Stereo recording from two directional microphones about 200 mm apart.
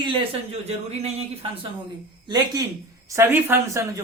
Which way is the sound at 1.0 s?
30° right (ahead or behind).